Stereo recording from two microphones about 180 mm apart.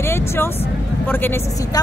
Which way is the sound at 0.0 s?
15° left (ahead or behind).